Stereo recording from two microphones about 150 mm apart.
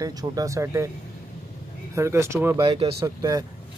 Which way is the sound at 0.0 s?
25° right (ahead or behind).